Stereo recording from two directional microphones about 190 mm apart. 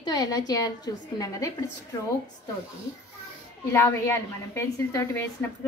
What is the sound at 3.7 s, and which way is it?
A woman's voice, 15° left (ahead or behind).